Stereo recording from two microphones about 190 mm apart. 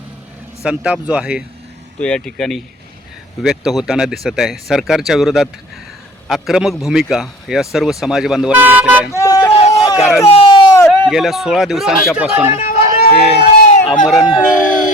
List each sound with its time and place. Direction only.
0.6 s a man's voice: 5° right (ahead or behind)
2.0 s a man's voice: 5° left (ahead or behind)
9.1 s vehicle: 20° left (ahead or behind)
9.5 s a sound: 30° left (ahead or behind)
9.7 s a sound: 20° left (ahead or behind)
10.2 s a sound: 30° left (ahead or behind)
11.0 s a man's voice: centre (ahead or behind)
12.5 s music: 50° left (ahead or behind)
13.7 s run: 30° left (ahead or behind)
14.2 s speech: 25° left (ahead or behind)